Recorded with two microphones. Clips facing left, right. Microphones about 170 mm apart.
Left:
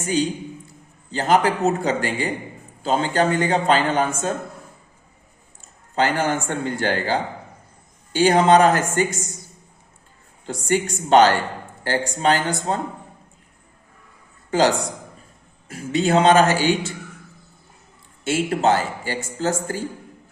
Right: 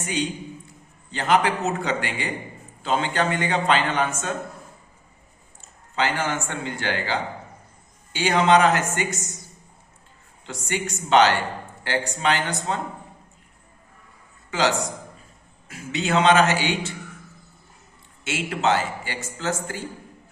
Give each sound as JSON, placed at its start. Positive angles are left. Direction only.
{"t": 1.1, "sound": "speech", "side_deg": 40}
{"t": 5.9, "sound": "a man's voice", "side_deg": 40}
{"t": 10.4, "sound": "speech", "side_deg": 40}
{"t": 14.5, "sound": "a man's voice", "side_deg": 40}
{"t": 18.3, "sound": "speech", "side_deg": 35}